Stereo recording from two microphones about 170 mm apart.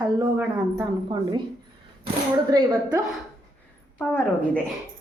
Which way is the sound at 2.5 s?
20° right (ahead or behind).